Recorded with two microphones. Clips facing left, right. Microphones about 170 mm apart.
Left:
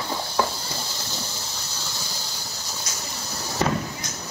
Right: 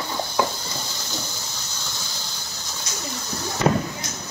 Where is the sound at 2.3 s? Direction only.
35° left (ahead or behind).